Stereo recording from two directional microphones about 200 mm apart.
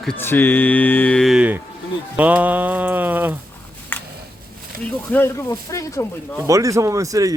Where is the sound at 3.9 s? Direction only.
10° left (ahead or behind).